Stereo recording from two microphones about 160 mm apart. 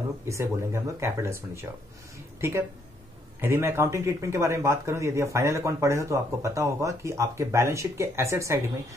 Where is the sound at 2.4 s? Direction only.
15° right (ahead or behind).